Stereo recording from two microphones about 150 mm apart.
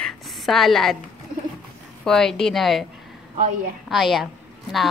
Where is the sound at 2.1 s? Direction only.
5° left (ahead or behind).